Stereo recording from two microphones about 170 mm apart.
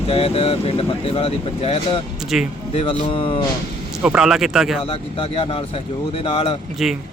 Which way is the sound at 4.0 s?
5° right (ahead or behind).